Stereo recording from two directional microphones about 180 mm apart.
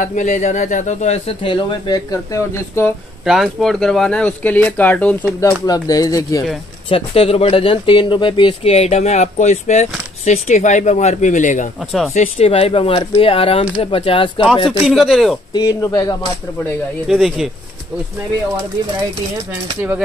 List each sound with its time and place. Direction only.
0.0 s speech: 45° left (ahead or behind); by 2.9 s 15° left (ahead or behind)
3.3 s speech: centre (ahead or behind)
5.4 s speech: 20° left (ahead or behind)
6.9 s speech: 30° left (ahead or behind)
14.8 s speech: centre (ahead or behind)
15.5 s speech: 20° left (ahead or behind)
17.1 s speech: centre (ahead or behind)